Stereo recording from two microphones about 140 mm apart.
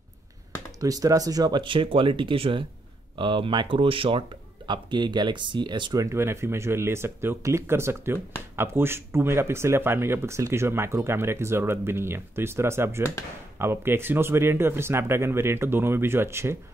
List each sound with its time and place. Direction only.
0.7 s speech: 25° right (ahead or behind)
6.0 s speech: 20° right (ahead or behind)